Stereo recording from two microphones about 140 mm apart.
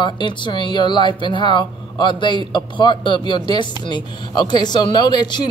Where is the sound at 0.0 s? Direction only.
35° left (ahead or behind).